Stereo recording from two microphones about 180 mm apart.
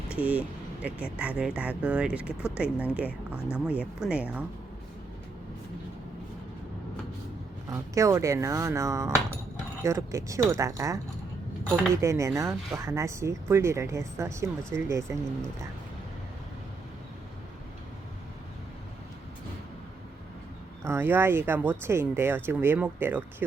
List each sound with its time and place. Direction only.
0.1 s speech: 10° right (ahead or behind)
7.7 s speech: 15° right (ahead or behind)
12.0 s speech: 15° right (ahead or behind)
20.8 s speech: 15° right (ahead or behind)